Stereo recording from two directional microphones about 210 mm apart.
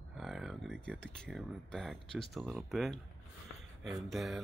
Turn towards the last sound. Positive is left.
turn(degrees=0)  # may be behind; listen again after turning